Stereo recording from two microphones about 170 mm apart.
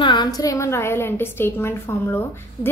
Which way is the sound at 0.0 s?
25° left (ahead or behind).